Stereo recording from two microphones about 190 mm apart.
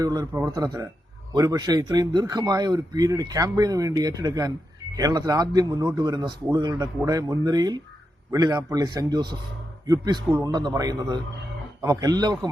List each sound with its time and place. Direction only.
0.0 s a man's voice: 20° right (ahead or behind)